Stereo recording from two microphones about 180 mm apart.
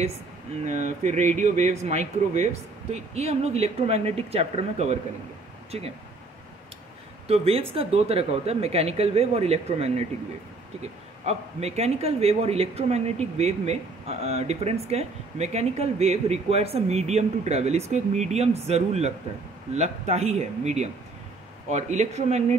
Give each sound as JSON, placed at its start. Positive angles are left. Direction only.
{"t": 0.7, "sound": "speech", "side_deg": -40}
{"t": 7.2, "sound": "speech", "side_deg": -35}
{"t": 11.2, "sound": "speech", "side_deg": -35}